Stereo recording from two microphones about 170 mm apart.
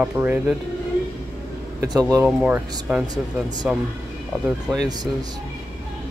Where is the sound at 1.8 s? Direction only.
20° right (ahead or behind).